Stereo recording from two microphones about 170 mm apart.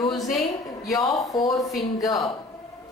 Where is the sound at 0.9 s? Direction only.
25° left (ahead or behind).